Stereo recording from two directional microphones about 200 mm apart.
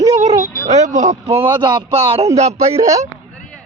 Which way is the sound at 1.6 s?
25° right (ahead or behind).